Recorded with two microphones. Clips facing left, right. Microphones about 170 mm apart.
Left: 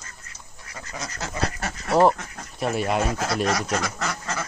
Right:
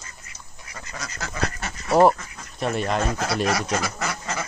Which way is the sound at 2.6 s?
5° left (ahead or behind).